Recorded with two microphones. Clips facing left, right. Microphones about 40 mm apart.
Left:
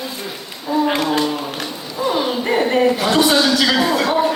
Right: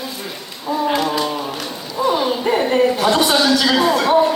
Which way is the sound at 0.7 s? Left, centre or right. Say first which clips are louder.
Left 2 dB; centre.